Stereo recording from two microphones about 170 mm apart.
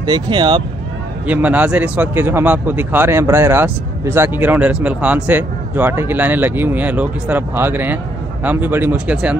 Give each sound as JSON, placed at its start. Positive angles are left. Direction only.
{"t": 0.0, "sound": "speech", "side_deg": -25}
{"t": 1.2, "sound": "a man's voice", "side_deg": -10}